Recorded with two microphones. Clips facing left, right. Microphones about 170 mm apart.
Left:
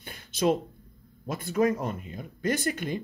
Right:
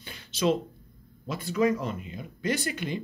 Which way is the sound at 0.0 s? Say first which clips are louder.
Left 1 dB; 50° left (ahead or behind).